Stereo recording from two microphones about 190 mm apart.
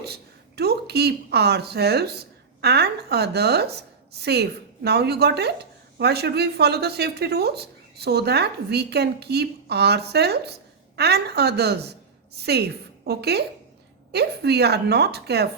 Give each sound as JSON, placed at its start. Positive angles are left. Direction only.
{"t": 0.0, "sound": "a woman's voice", "side_deg": -55}